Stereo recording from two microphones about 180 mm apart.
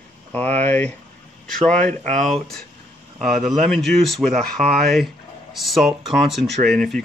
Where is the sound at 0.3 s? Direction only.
10° left (ahead or behind).